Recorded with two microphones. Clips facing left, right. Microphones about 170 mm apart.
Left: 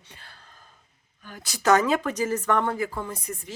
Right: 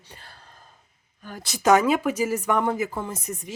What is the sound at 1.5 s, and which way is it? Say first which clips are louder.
A woman's voice: right 2 dB; 10° right (ahead or behind).